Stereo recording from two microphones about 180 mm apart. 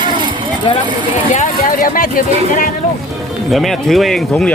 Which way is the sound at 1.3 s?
45° left (ahead or behind).